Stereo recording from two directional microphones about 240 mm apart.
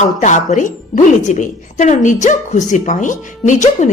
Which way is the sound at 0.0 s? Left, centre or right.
Left.